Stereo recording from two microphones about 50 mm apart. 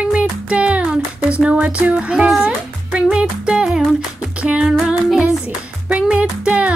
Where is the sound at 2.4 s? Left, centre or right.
Centre.